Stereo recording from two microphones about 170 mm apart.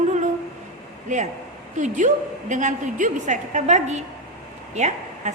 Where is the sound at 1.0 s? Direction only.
45° right (ahead or behind).